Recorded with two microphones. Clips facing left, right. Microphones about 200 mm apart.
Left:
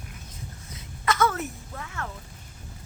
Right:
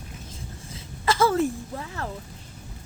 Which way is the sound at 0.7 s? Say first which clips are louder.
Right 2 dB; 30° right (ahead or behind).